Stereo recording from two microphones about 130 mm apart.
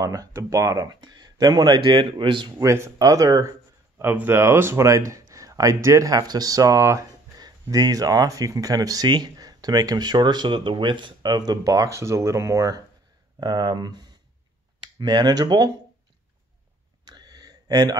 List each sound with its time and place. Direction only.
0.0 s speech: 25° right (ahead or behind)
2.6 s speech: 20° right (ahead or behind)
4.0 s speech: 15° right (ahead or behind); by 15.7 s 30° right (ahead or behind)
17.0 s a sound: 30° right (ahead or behind)